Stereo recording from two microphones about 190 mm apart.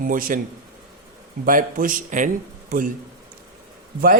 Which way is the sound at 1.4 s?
45° right (ahead or behind).